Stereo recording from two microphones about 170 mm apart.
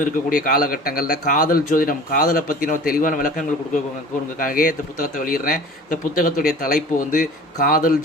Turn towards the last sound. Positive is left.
turn(degrees=55)  # may be behind; listen again after turning